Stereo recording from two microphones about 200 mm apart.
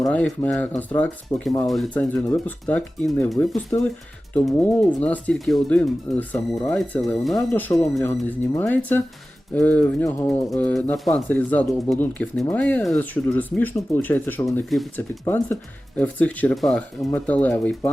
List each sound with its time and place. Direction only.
0.0 s speech: 5° left (ahead or behind)
1.3 s speech: 15° left (ahead or behind)
1.6 s speech: centre (ahead or behind)
15.2 s speech: 10° left (ahead or behind)